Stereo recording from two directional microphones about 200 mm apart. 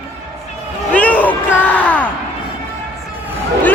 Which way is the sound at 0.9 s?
10° left (ahead or behind).